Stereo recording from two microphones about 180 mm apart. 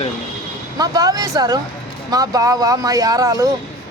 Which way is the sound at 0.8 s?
20° right (ahead or behind).